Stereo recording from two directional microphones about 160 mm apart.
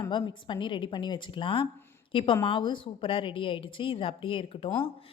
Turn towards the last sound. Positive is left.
turn(degrees=35)  # may be behind; listen again after turning